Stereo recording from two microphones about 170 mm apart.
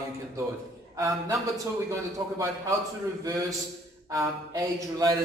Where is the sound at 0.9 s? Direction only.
20° right (ahead or behind).